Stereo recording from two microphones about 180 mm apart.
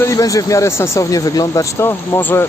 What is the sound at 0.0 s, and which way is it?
Speech, 20° left (ahead or behind).